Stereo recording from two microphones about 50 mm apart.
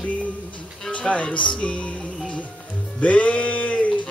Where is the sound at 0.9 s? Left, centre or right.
Left.